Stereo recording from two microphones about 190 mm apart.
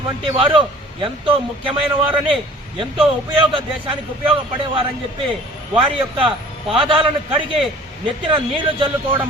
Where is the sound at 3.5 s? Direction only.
30° right (ahead or behind).